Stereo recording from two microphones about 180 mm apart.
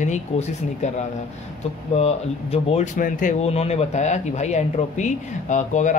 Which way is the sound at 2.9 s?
50° left (ahead or behind).